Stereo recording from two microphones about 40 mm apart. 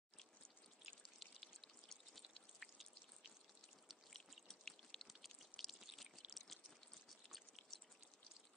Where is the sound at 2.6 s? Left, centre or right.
Centre.